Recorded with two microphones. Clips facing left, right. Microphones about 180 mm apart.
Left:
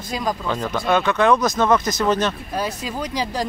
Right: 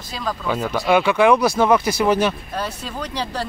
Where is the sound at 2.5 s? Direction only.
10° left (ahead or behind).